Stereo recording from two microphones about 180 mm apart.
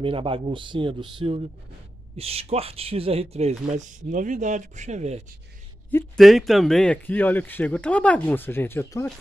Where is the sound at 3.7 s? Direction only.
45° right (ahead or behind).